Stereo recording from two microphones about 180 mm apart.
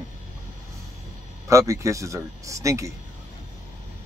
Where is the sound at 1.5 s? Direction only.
15° right (ahead or behind).